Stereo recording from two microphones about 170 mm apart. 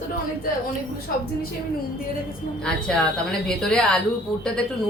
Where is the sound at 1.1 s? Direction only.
60° left (ahead or behind).